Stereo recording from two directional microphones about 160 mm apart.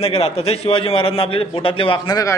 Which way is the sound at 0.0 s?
40° left (ahead or behind).